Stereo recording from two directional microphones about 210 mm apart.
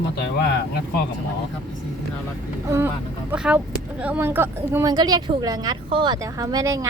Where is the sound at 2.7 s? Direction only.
10° right (ahead or behind).